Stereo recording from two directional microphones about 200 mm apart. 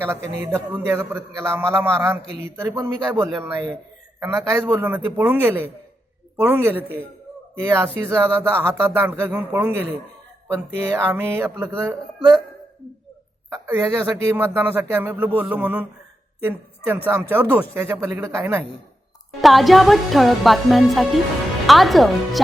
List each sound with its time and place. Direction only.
0.0 s speech: 15° right (ahead or behind)
13.5 s speech: 15° right (ahead or behind)
19.4 s music: centre (ahead or behind)